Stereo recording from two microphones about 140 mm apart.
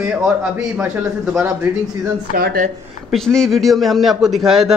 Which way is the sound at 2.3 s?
85° right.